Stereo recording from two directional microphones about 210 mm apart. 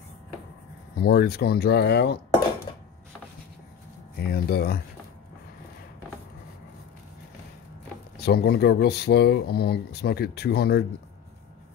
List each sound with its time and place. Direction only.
1.0 s speech: 45° left (ahead or behind)
4.2 s speech: 50° left (ahead or behind)
8.2 s speech: 50° left (ahead or behind)